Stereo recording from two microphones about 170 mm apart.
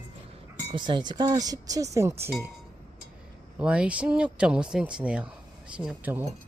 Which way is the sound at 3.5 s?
5° right (ahead or behind).